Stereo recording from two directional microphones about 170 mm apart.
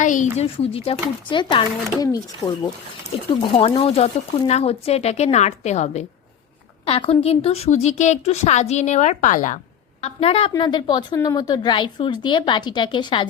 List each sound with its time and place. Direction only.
0.0 s a woman's voice: 45° left (ahead or behind)
0.3 s a woman's voice: 35° left (ahead or behind)
2.4 s speech: 20° left (ahead or behind)
3.4 s a woman's voice: 35° left (ahead or behind); by 9.6 s 50° left (ahead or behind)
10.0 s a woman's voice: 35° left (ahead or behind)